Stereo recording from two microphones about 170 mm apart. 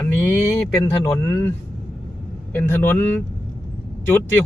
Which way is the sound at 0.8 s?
20° left (ahead or behind).